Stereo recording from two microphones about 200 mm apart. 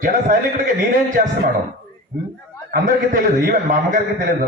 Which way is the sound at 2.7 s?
40° right (ahead or behind).